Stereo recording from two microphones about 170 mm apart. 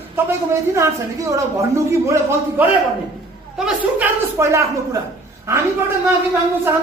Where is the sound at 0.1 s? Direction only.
15° right (ahead or behind).